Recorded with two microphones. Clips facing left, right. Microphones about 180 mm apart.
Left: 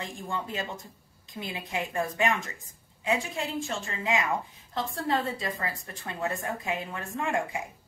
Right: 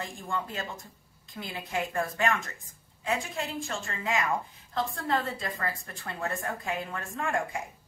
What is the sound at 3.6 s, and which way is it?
A woman's voice, 20° left (ahead or behind).